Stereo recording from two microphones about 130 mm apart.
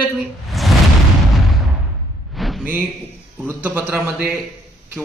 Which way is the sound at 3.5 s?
15° right (ahead or behind).